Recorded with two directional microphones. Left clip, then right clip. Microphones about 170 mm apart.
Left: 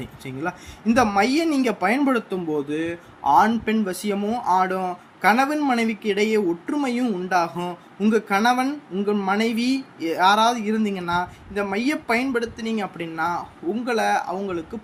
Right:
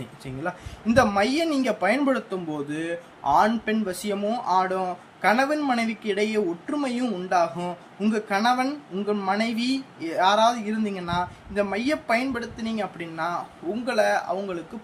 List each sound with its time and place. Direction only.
0.4 s speech: 20° left (ahead or behind)